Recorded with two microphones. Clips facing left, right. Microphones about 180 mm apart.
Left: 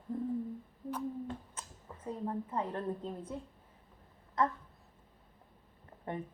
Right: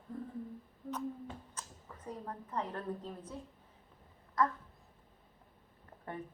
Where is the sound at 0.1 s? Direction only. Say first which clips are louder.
Left 6 dB; 25° left (ahead or behind).